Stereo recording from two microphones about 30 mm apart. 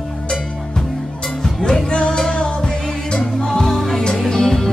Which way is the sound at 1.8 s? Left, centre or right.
Left.